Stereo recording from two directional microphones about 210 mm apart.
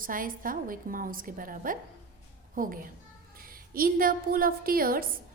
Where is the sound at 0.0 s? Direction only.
40° right (ahead or behind).